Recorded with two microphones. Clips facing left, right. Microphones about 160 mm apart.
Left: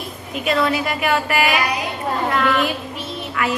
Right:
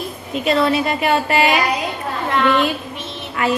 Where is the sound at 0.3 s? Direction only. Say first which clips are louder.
Right 3 dB; 30° right (ahead or behind).